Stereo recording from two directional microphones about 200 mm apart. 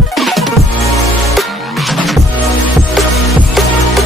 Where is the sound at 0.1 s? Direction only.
Centre (ahead or behind).